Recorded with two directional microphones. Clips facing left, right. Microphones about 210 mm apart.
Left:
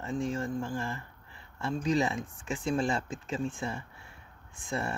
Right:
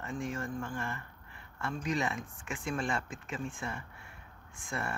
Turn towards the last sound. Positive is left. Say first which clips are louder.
# left 4 dB
turn(degrees=30)  # may be behind; listen again after turning